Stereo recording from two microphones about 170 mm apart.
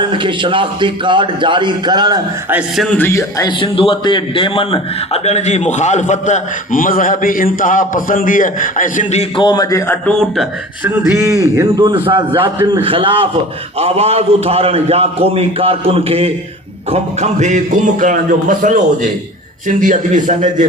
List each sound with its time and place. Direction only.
0.1 s a man's voice: 30° right (ahead or behind)
2.5 s a man's voice: 5° right (ahead or behind)
3.1 s a man's voice: 20° left (ahead or behind)
3.6 s a man's voice: 30° left (ahead or behind); by 9.2 s 50° left (ahead or behind)
9.4 s a man's voice: 25° left (ahead or behind)
10.8 s a man's voice: 15° right (ahead or behind); by 17.6 s 40° right (ahead or behind)
18.0 s a man's voice: 50° right (ahead or behind)